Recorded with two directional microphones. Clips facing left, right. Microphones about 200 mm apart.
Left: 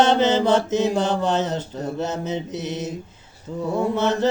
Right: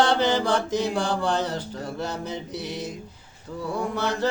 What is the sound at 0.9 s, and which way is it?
Mantra, 20° left (ahead or behind).